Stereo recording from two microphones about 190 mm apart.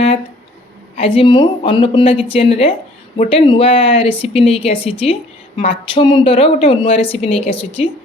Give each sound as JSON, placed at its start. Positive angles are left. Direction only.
{"t": 0.9, "sound": "a woman's voice", "side_deg": 30}